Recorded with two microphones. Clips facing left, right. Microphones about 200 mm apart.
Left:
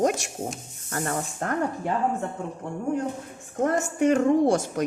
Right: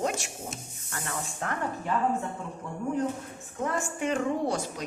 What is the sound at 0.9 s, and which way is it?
A woman's voice, 45° left (ahead or behind).